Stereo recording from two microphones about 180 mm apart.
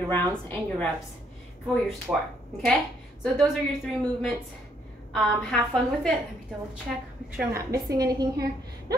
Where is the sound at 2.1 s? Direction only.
10° right (ahead or behind).